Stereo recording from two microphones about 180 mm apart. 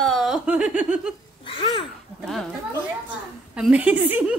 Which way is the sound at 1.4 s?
30° left (ahead or behind).